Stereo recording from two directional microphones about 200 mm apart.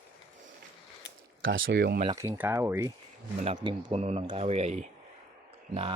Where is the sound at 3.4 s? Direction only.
25° right (ahead or behind).